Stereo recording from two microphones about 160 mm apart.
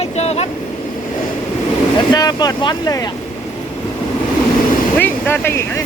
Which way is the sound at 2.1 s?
25° left (ahead or behind).